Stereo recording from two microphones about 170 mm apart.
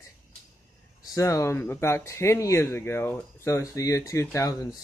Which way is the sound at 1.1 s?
20° left (ahead or behind).